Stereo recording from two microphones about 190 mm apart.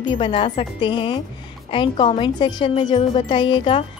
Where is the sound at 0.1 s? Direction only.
25° left (ahead or behind).